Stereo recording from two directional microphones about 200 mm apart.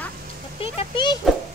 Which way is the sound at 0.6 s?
25° left (ahead or behind).